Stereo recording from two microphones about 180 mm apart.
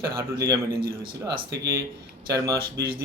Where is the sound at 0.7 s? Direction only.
55° right (ahead or behind).